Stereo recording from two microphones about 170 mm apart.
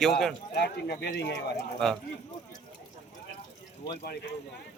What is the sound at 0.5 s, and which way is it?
Speech, 80° left.